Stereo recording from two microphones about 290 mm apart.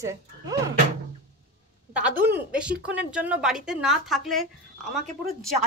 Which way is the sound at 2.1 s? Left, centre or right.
Right.